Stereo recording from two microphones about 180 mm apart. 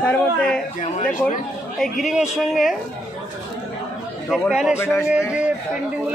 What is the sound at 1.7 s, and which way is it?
A man's voice, centre (ahead or behind).